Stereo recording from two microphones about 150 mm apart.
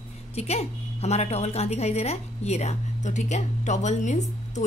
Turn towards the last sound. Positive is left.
turn(degrees=50)  # may be behind; listen again after turning